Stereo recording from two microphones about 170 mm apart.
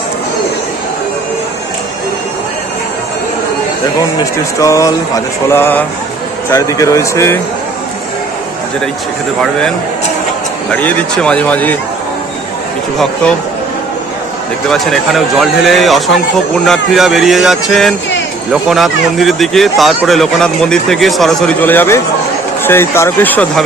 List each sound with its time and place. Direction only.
4.2 s a sound: 20° left (ahead or behind)
6.5 s speech: 20° left (ahead or behind)
10.7 s speech: 10° left (ahead or behind)
14.7 s speech: centre (ahead or behind)